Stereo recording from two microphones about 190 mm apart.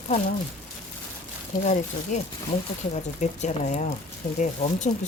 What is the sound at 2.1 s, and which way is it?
Speech, 40° left (ahead or behind).